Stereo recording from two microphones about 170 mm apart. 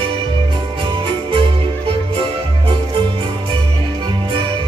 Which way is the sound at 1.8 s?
30° right (ahead or behind).